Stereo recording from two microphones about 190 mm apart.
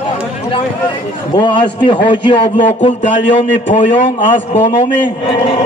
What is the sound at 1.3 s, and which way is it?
A man's voice, 25° left (ahead or behind).